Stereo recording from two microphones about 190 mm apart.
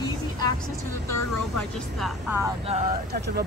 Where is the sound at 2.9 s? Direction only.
55° right (ahead or behind).